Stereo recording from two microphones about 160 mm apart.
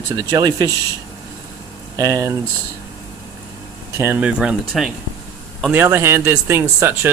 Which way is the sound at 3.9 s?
15° right (ahead or behind).